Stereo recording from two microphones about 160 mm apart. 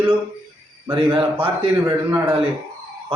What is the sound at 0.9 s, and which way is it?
Speech, 35° right (ahead or behind).